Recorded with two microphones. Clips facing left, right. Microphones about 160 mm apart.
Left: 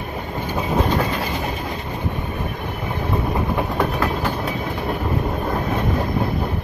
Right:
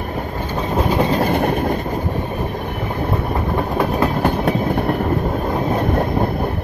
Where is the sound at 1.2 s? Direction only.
55° right (ahead or behind).